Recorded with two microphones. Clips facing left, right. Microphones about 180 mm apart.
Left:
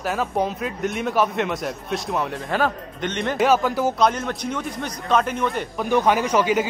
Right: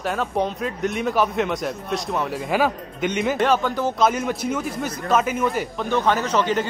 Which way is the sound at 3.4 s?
5° left (ahead or behind).